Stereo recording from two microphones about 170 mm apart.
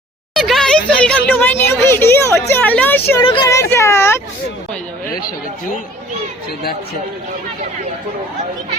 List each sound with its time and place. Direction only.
0.3 s a sound: centre (ahead or behind)
1.3 s speech: 10° left (ahead or behind)
3.2 s speech: 25° left (ahead or behind)